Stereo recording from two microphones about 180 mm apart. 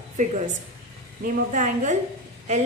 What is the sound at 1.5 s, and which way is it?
Speech, 45° right (ahead or behind).